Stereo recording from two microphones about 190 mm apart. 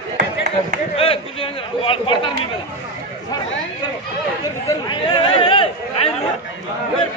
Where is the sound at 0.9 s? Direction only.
30° left (ahead or behind).